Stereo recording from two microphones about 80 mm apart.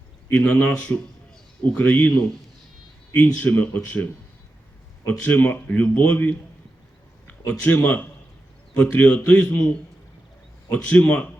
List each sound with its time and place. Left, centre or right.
0.3 s a man's voice: centre
3.3 s a man's voice: centre
7.6 s a man's voice: left